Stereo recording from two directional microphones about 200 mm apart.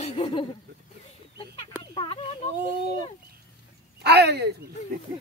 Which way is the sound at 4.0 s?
55° right (ahead or behind).